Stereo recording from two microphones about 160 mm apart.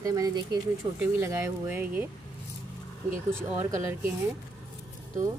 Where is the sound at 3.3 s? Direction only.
15° right (ahead or behind).